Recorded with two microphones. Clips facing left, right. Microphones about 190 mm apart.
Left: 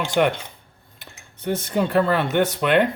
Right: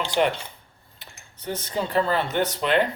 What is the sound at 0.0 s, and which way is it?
Speech, 55° left (ahead or behind).